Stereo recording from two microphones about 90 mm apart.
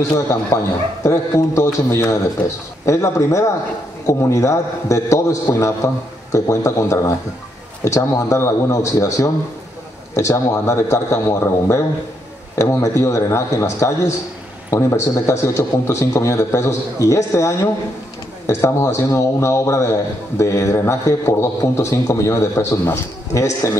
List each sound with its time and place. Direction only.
0.5 s a man's voice: 40° left (ahead or behind)